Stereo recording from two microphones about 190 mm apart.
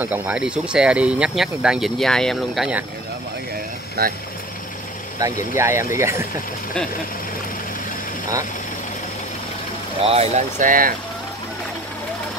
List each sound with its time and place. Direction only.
0.0 s speech: 10° right (ahead or behind)
4.0 s speech: 55° right (ahead or behind)
5.2 s speech: 15° right (ahead or behind)
10.0 s speech: 35° right (ahead or behind)